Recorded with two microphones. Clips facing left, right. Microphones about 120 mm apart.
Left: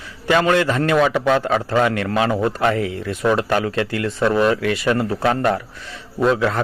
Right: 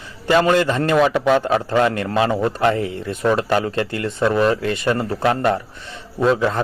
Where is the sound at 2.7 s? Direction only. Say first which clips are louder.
Left 1 dB; 30° right (ahead or behind).